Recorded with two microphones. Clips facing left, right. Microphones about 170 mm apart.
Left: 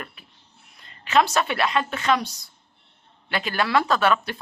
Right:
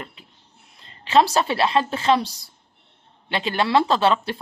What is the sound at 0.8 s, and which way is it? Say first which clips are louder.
Speech: right 3 dB; 30° right (ahead or behind).